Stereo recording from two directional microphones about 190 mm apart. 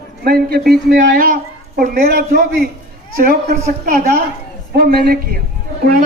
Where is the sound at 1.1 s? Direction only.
45° right (ahead or behind).